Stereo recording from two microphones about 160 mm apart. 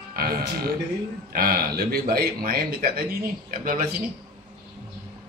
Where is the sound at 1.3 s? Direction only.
65° right (ahead or behind).